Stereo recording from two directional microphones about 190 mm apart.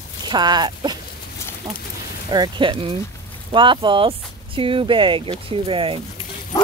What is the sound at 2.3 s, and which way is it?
Speech, 25° right (ahead or behind).